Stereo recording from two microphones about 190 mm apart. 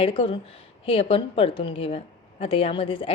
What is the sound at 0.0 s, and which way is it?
A woman's voice, 30° left (ahead or behind).